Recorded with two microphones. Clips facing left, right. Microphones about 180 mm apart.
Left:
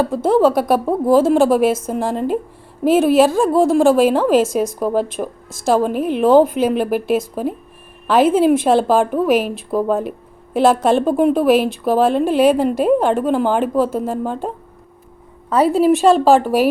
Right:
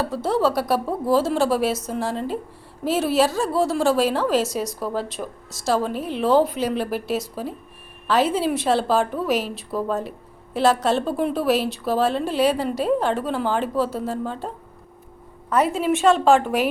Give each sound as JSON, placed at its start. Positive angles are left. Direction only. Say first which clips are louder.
{"t": 0.0, "sound": "a woman's voice", "louder": "left 7 dB", "side_deg": 50}
{"t": 15.4, "sound": "a woman's voice", "louder": "left 7 dB", "side_deg": 30}